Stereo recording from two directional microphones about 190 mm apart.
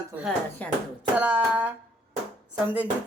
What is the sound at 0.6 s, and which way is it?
Speech, 10° left (ahead or behind).